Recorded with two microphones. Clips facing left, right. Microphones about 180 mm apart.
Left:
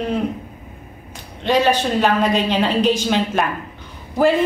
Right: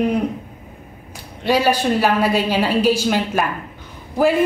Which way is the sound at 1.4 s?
10° right (ahead or behind).